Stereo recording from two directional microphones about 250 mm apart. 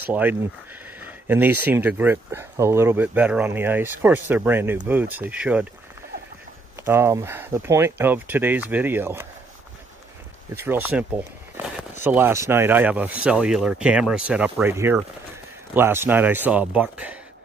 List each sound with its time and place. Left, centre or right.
0.0 s speech: centre
6.8 s speech: centre
10.5 s speech: centre